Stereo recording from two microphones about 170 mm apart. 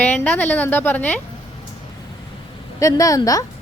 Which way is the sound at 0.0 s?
10° left (ahead or behind).